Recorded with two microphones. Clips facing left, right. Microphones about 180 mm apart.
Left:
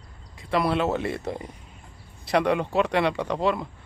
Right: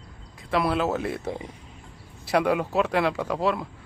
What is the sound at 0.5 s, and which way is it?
Speech, centre (ahead or behind).